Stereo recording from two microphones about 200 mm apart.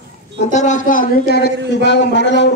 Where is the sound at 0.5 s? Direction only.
40° left (ahead or behind).